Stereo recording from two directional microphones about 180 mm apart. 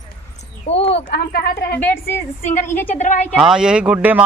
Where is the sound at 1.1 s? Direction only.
65° left (ahead or behind).